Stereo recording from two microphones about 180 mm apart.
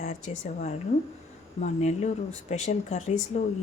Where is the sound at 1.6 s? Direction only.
40° left (ahead or behind).